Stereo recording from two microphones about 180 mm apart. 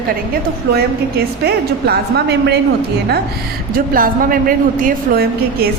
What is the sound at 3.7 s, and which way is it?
A woman's voice, 50° right (ahead or behind).